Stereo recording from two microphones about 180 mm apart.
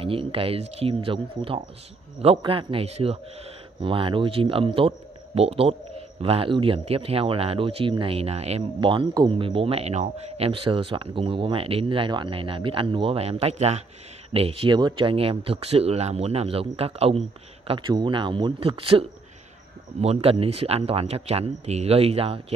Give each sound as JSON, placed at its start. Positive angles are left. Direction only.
{"t": 0.0, "sound": "speech", "side_deg": -30}